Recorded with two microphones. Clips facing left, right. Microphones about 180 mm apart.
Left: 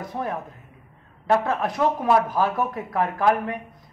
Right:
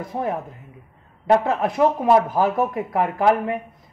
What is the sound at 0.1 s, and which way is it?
Speech, 20° right (ahead or behind).